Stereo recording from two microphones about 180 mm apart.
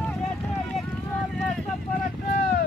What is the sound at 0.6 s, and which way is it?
Vehicle, centre (ahead or behind).